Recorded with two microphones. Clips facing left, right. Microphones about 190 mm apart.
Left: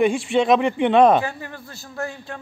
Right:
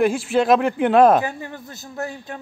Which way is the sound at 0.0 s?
Centre (ahead or behind).